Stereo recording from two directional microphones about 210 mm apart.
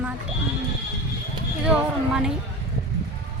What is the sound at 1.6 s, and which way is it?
Speech, 5° right (ahead or behind).